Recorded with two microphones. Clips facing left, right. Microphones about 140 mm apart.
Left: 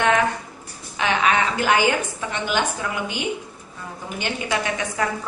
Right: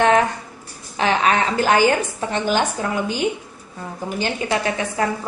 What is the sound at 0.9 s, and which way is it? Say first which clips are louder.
A woman's voice: right 2 dB; 35° right (ahead or behind).